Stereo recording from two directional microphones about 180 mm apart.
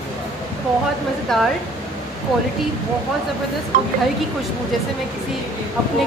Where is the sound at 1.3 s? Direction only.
Centre (ahead or behind).